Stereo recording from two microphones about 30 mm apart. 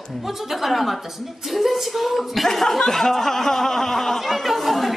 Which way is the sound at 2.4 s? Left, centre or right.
Centre.